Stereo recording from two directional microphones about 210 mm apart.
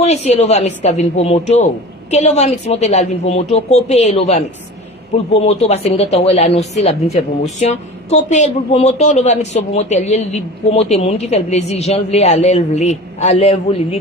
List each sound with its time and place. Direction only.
0.0 s speech: 30° left (ahead or behind)